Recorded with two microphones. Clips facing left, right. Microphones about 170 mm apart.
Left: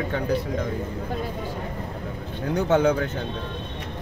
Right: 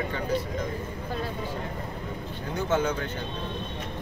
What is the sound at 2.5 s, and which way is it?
Speech, 65° left (ahead or behind).